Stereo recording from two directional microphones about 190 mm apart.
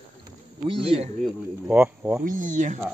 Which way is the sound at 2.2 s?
45° right (ahead or behind).